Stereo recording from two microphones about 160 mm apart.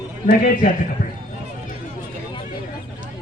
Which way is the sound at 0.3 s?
55° left (ahead or behind).